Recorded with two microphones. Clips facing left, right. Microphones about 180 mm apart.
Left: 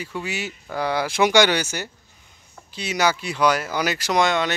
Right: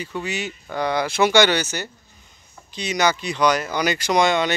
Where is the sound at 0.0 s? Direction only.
5° left (ahead or behind).